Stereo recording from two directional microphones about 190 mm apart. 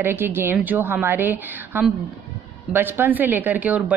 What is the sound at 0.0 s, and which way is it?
Speech, 10° right (ahead or behind).